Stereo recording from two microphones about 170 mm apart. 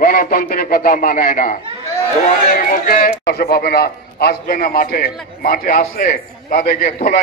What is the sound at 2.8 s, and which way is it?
A man's voice, 55° left (ahead or behind).